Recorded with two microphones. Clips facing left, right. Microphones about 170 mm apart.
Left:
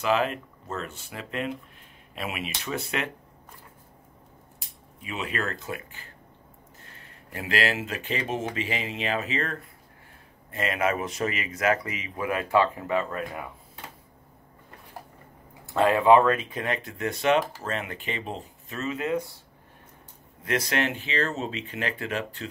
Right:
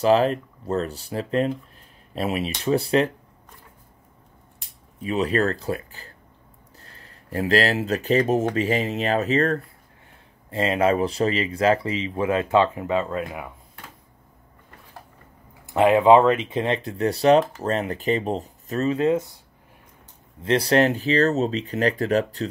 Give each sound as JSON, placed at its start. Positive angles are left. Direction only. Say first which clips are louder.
{"t": 0.0, "sound": "speech", "louder": "right 7 dB", "side_deg": -35}
{"t": 5.0, "sound": "speech", "louder": "right 10 dB", "side_deg": -35}
{"t": 10.5, "sound": "speech", "louder": "right 6 dB", "side_deg": -30}
{"t": 15.6, "sound": "speech", "louder": "right 5 dB", "side_deg": -15}
{"t": 20.4, "sound": "speech", "louder": "right 8 dB", "side_deg": -35}